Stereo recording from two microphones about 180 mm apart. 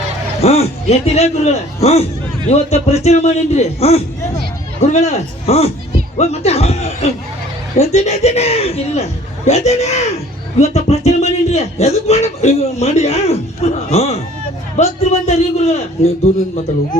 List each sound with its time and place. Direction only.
0.4 s speech: 35° left (ahead or behind)